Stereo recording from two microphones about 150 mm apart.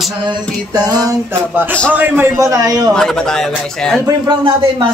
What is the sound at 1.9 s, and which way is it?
A man's voice, 15° right (ahead or behind).